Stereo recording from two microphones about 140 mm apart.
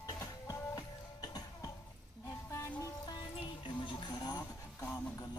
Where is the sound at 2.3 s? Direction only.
20° left (ahead or behind).